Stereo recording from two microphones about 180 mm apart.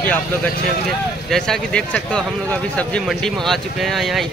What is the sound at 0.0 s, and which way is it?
Speech, 10° left (ahead or behind).